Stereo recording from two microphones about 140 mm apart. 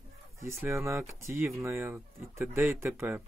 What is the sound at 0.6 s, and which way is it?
Speech, 20° right (ahead or behind).